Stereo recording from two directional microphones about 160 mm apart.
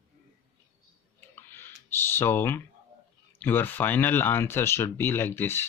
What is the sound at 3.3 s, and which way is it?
Speech, 10° left (ahead or behind).